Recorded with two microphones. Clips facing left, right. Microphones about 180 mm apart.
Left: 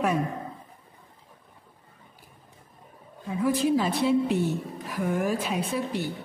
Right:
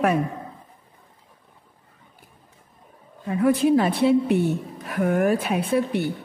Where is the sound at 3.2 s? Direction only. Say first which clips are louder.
Right 5 dB; 60° right (ahead or behind).